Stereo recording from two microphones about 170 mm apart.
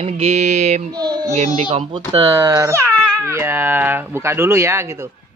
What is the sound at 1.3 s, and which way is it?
Speech, 40° right (ahead or behind).